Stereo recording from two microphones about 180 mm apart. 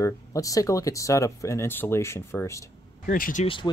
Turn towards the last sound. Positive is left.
turn(degrees=50)  # may be behind; listen again after turning